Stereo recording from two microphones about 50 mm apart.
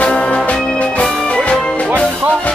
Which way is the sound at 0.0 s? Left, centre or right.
Left.